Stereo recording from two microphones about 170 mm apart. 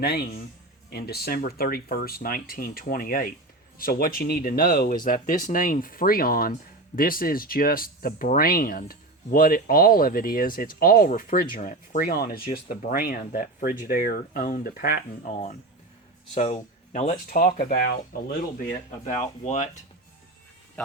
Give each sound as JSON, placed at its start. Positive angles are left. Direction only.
{"t": 0.0, "sound": "a man's voice", "side_deg": 70}
{"t": 12.5, "sound": "speech", "side_deg": 50}
{"t": 15.3, "sound": "speech", "side_deg": 40}
{"t": 18.9, "sound": "speech", "side_deg": 45}